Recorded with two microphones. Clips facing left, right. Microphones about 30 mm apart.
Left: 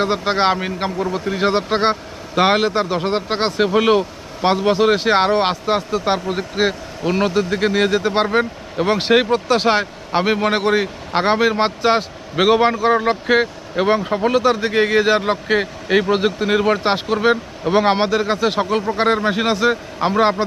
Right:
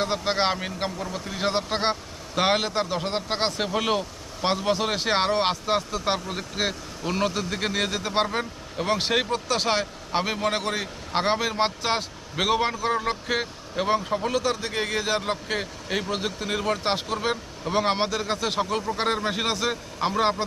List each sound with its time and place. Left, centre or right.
0.0 s a man's voice: centre